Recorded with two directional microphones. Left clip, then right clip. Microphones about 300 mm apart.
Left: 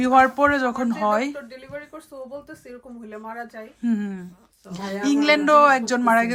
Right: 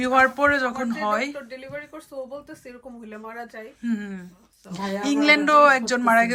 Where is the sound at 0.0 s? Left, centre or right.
Centre.